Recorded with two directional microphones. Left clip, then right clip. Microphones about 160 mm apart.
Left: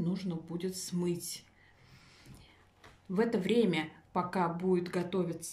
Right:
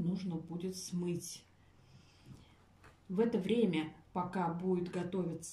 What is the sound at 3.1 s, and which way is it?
Speech, 10° right (ahead or behind).